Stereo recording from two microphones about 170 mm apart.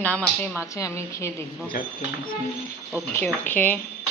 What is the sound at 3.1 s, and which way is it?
Speech, 10° left (ahead or behind).